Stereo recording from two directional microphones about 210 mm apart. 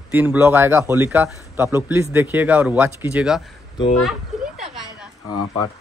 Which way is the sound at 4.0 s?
Centre (ahead or behind).